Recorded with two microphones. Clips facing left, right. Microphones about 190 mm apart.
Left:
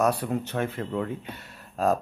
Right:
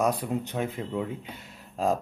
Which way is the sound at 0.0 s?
15° right (ahead or behind).